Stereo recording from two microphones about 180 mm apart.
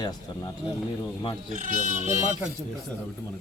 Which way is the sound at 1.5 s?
45° right (ahead or behind).